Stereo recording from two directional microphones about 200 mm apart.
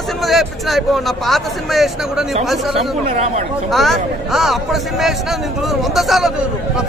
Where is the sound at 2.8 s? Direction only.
35° right (ahead or behind).